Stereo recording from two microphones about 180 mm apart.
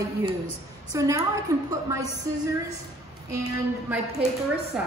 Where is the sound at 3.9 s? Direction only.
10° right (ahead or behind).